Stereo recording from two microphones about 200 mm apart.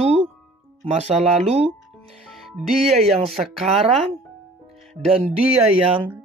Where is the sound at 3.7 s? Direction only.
30° right (ahead or behind).